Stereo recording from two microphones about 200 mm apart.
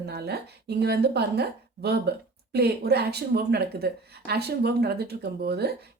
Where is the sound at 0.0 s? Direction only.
55° right (ahead or behind).